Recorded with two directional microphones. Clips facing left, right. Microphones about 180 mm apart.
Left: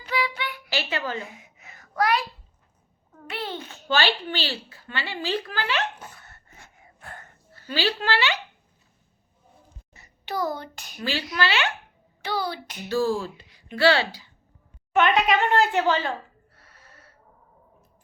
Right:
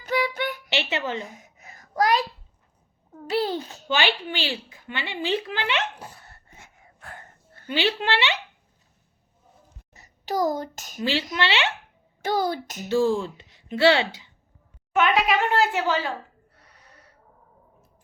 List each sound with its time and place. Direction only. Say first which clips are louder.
0.0 s child singing: right 3 dB; 45° right (ahead or behind)
0.7 s a woman's voice: left 1 dB; 25° right (ahead or behind)
1.3 s a sound: right 2 dB; 40° right (ahead or behind)
3.2 s a child's voice: right 8 dB; 35° right (ahead or behind)
3.8 s speech: left 1 dB; 15° right (ahead or behind); by 6.6 s 35° right (ahead or behind)
7.7 s speech: right 1 dB; 20° right (ahead or behind)
9.9 s a sound: right 4 dB; 40° right (ahead or behind)
11.0 s speech: right 2 dB; 25° right (ahead or behind)
12.2 s a child's voice: right 4 dB; 45° right (ahead or behind)
12.9 s speech: right 2 dB; 20° right (ahead or behind)
14.9 s speech: left 1 dB; centre (ahead or behind)
16.6 s a sound: even; 20° right (ahead or behind)